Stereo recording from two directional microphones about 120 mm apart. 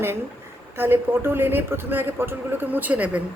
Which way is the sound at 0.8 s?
20° right (ahead or behind).